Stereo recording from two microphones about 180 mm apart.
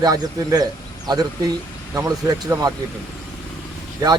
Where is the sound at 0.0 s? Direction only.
20° right (ahead or behind).